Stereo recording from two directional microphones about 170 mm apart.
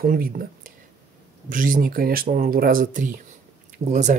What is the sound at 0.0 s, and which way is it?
Speech, 55° right (ahead or behind).